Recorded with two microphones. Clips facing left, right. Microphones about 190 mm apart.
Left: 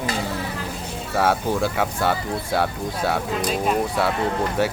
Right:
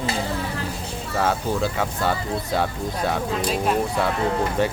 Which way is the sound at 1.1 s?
10° left (ahead or behind).